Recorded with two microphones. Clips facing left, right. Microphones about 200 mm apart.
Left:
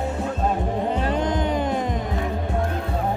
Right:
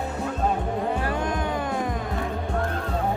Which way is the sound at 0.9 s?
20° left (ahead or behind).